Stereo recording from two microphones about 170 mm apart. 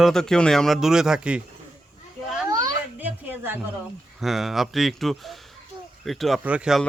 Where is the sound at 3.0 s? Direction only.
10° right (ahead or behind).